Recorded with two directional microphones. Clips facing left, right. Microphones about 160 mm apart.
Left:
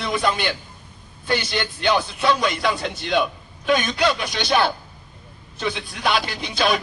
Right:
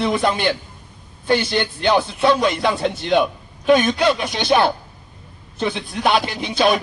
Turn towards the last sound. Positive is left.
turn(degrees=-25)  # may be behind; listen again after turning